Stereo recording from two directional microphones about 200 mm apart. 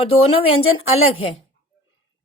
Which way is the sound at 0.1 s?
30° left (ahead or behind).